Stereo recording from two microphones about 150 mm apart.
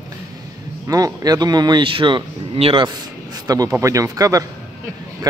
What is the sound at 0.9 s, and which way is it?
Speech, 25° right (ahead or behind).